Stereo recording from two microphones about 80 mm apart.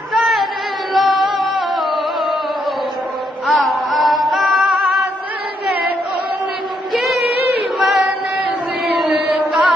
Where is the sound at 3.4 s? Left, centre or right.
Centre.